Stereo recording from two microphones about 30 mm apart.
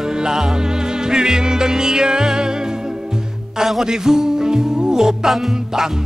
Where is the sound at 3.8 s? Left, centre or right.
Right.